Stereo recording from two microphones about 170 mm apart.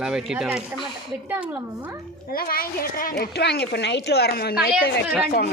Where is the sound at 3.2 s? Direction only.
75° left (ahead or behind).